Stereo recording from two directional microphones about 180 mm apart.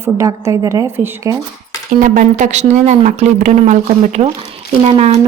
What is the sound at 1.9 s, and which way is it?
Speech, 50° right (ahead or behind).